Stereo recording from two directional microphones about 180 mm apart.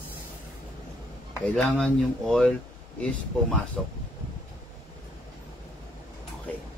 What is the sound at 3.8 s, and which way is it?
Speech, centre (ahead or behind).